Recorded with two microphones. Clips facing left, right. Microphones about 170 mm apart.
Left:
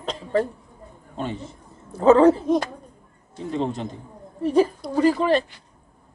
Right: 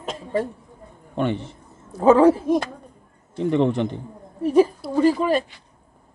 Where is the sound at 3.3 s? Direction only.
70° right (ahead or behind).